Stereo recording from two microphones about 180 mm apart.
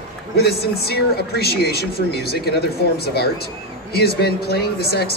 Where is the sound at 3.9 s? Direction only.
60° left (ahead or behind).